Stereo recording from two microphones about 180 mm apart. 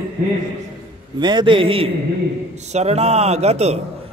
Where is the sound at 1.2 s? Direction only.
25° right (ahead or behind).